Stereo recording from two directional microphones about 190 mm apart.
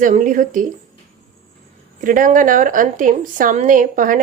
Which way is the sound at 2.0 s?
45° right (ahead or behind).